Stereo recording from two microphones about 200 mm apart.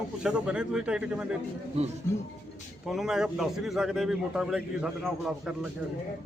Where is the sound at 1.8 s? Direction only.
30° right (ahead or behind).